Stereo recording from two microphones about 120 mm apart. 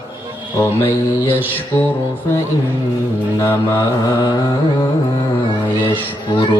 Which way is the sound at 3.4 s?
25° left (ahead or behind).